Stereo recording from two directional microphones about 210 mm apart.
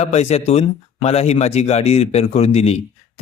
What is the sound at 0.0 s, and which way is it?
A man's voice, 30° left (ahead or behind).